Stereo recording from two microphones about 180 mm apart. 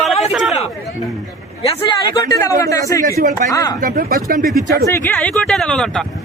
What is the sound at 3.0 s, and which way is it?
Speech, 50° right (ahead or behind).